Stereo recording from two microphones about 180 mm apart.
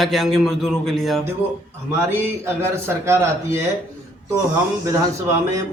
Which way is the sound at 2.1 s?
15° right (ahead or behind).